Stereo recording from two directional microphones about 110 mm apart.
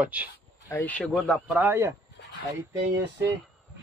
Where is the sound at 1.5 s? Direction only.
20° right (ahead or behind).